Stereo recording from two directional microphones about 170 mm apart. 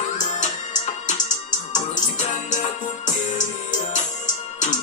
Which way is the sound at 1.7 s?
45° left (ahead or behind).